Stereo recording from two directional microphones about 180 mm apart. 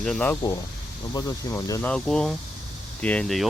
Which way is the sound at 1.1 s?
15° left (ahead or behind).